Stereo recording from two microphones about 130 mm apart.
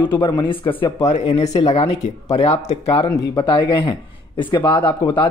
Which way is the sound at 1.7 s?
55° left (ahead or behind).